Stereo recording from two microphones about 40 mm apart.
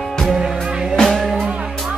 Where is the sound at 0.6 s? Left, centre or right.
Centre.